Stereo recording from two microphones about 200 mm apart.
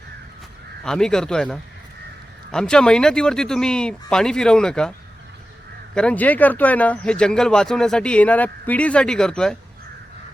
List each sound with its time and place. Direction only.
0.9 s speech: 5° left (ahead or behind)